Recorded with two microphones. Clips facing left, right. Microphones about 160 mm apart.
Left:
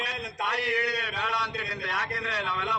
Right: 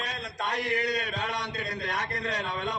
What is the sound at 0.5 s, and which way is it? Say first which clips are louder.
A man's voice: right 1 dB; 50° right (ahead or behind).